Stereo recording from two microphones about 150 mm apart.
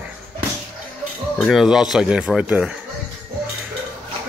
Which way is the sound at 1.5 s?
5° right (ahead or behind).